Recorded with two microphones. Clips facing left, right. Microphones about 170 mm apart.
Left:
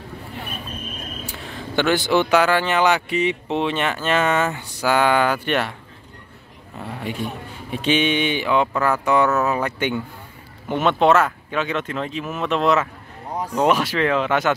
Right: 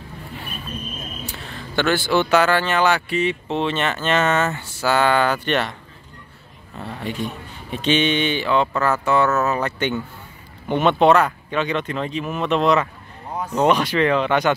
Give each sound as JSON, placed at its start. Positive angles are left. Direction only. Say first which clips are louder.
{"t": 1.2, "sound": "speech", "louder": "left 1 dB", "side_deg": 15}
{"t": 6.8, "sound": "speech", "louder": "even", "side_deg": 10}